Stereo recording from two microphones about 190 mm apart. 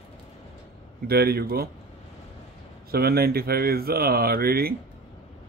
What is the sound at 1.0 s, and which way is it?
Speech, 55° right (ahead or behind).